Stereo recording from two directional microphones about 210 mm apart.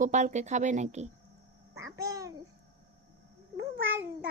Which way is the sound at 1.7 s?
15° right (ahead or behind).